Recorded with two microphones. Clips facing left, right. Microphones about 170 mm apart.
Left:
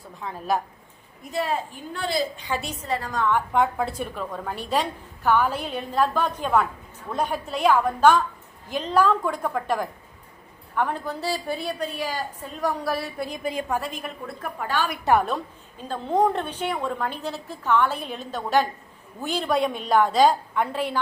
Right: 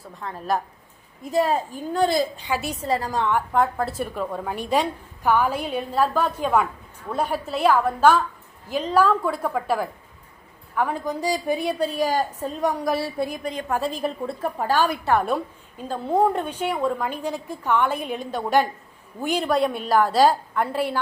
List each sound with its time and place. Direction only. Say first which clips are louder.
0.2 s a woman's voice: even; centre (ahead or behind)
1.3 s a woman's voice: right 5 dB; 40° right (ahead or behind)
2.5 s a woman's voice: right 3 dB; 5° right (ahead or behind)
2.8 s a woman's voice: right 4 dB; 35° right (ahead or behind)
3.3 s a woman's voice: even; centre (ahead or behind); by 11.7 s 15° right (ahead or behind)
11.8 s a woman's voice: right 7 dB; 40° right (ahead or behind)
12.6 s a woman's voice: right 2 dB; 15° right (ahead or behind)
13.4 s a woman's voice: left 1 dB; 10° left (ahead or behind)
13.8 s a woman's voice: right 7 dB; 30° right (ahead or behind)
15.8 s a woman's voice: right 1 dB; 10° right (ahead or behind)
19.5 s a woman's voice: even; centre (ahead or behind)